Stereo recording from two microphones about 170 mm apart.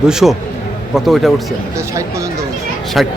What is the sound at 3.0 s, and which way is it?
Speech, centre (ahead or behind).